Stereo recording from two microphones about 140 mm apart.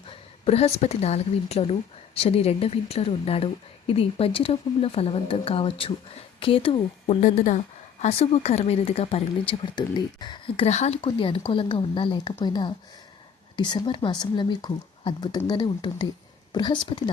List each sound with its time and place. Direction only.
0.1 s a woman's voice: 45° left (ahead or behind)
7.2 s a woman's voice: 60° left (ahead or behind)
11.0 s speech: 35° left (ahead or behind)